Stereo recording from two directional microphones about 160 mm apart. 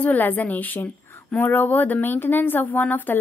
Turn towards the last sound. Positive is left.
turn(degrees=10)  # may be behind; listen again after turning